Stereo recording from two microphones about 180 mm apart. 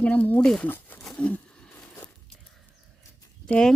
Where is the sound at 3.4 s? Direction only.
5° left (ahead or behind).